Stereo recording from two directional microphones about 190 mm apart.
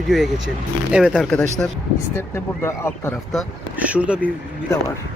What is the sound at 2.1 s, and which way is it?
Speech, 15° left (ahead or behind).